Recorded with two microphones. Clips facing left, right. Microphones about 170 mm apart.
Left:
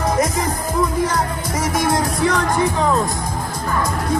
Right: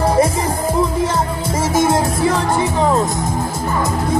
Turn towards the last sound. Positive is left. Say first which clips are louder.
# right 2 dB
turn(degrees=-25)  # may be behind; listen again after turning